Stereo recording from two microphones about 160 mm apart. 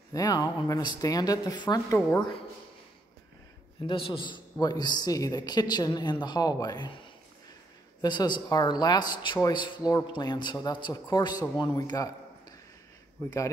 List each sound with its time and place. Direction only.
0.1 s speech: 25° left (ahead or behind)
3.8 s speech: 35° left (ahead or behind)
8.0 s speech: 25° left (ahead or behind)
13.2 s speech: 10° left (ahead or behind)